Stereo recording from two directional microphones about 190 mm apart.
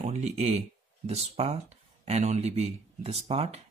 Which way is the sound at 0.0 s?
35° right (ahead or behind).